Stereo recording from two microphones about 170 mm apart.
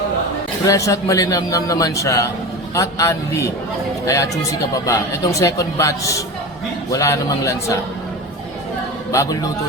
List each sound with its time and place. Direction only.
0.6 s a man's voice: 20° left (ahead or behind)
9.1 s a man's voice: 20° left (ahead or behind)